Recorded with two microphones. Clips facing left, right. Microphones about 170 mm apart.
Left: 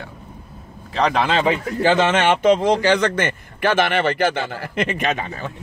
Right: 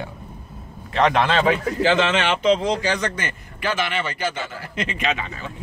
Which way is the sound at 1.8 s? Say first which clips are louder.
Left 2 dB; 45° left (ahead or behind).